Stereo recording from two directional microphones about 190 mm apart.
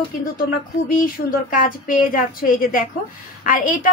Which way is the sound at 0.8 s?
50° left (ahead or behind).